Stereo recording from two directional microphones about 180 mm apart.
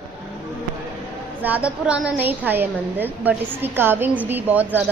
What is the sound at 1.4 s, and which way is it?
A woman's voice, 10° right (ahead or behind).